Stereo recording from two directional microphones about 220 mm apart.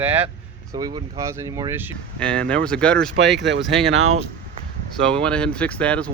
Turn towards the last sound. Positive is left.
turn(degrees=5)  # may be behind; listen again after turning